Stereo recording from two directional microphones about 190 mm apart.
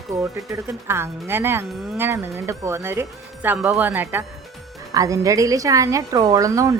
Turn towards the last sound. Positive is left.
turn(degrees=-15)  # may be behind; listen again after turning